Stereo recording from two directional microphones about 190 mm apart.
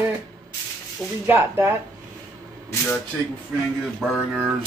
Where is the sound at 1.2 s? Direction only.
10° right (ahead or behind).